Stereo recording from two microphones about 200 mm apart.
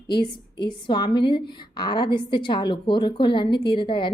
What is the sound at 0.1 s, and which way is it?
A woman's voice, 25° left (ahead or behind).